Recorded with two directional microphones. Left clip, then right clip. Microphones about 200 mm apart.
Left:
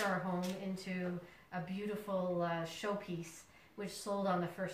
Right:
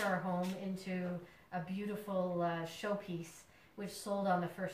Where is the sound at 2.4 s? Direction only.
10° right (ahead or behind).